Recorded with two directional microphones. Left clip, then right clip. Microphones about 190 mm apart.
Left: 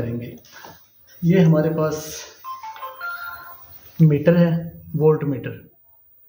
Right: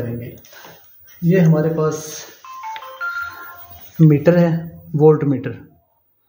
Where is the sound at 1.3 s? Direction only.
40° right (ahead or behind).